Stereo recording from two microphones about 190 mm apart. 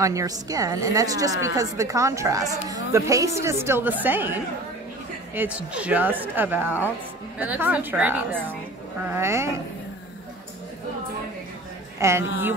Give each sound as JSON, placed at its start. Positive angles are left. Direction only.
{"t": 0.0, "sound": "a woman's voice", "side_deg": -15}
{"t": 12.0, "sound": "a woman's voice", "side_deg": -15}